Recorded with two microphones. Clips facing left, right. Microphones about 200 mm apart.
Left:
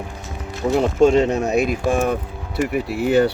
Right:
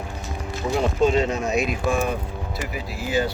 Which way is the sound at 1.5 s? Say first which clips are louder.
Left 4 dB; 45° left (ahead or behind).